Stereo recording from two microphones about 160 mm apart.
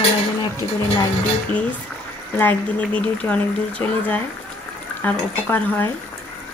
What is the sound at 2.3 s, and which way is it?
Speech, 10° left (ahead or behind).